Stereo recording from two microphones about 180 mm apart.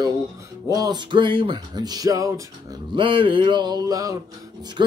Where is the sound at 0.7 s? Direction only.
20° right (ahead or behind).